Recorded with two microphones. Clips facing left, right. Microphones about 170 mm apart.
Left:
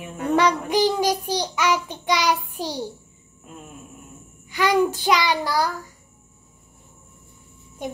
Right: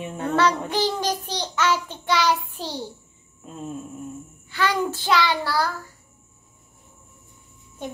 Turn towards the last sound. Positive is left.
turn(degrees=10)  # may be behind; listen again after turning